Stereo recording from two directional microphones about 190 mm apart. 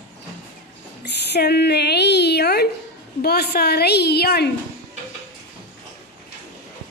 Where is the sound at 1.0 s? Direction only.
60° left (ahead or behind).